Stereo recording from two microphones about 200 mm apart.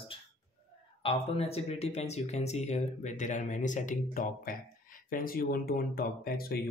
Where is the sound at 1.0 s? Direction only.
30° left (ahead or behind).